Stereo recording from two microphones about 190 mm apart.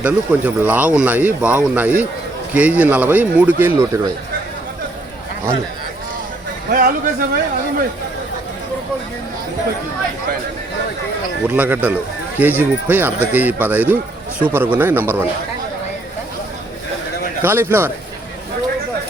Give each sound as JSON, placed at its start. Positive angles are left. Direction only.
{"t": 0.0, "sound": "speech", "side_deg": -10}
{"t": 6.7, "sound": "speech", "side_deg": -45}
{"t": 11.4, "sound": "speech", "side_deg": -10}
{"t": 17.4, "sound": "speech", "side_deg": -10}